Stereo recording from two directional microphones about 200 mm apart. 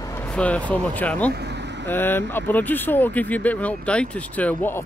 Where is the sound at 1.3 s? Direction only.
55° right (ahead or behind).